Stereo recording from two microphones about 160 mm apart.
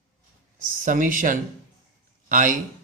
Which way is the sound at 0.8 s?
55° right (ahead or behind).